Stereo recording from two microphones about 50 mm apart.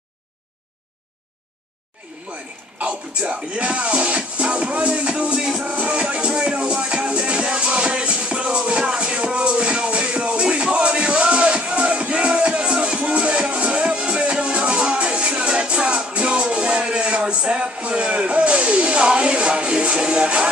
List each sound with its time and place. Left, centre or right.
2.3 s a sound: right
3.2 s speech: right
5.4 s music: centre
5.7 s music: right